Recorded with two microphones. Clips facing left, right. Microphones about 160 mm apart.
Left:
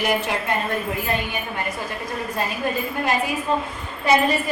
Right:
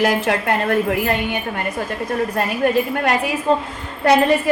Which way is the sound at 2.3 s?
70° right (ahead or behind).